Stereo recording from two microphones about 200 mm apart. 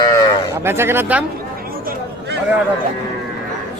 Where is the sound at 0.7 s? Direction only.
10° right (ahead or behind).